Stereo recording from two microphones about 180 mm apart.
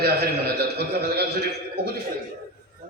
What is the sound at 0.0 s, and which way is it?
A man's voice, 60° right (ahead or behind).